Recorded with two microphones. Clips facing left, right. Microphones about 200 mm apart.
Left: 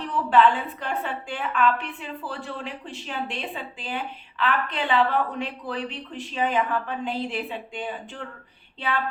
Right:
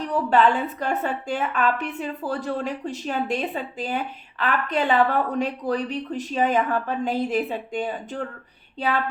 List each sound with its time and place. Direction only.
0.1 s a woman's voice: 40° right (ahead or behind)